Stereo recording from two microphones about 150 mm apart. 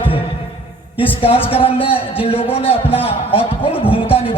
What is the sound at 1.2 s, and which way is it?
A man's voice, 40° left (ahead or behind).